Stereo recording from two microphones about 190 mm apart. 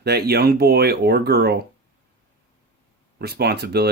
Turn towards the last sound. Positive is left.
turn(degrees=-60)  # may be behind; listen again after turning